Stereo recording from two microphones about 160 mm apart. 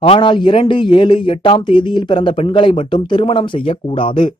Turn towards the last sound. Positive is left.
turn(degrees=30)  # may be behind; listen again after turning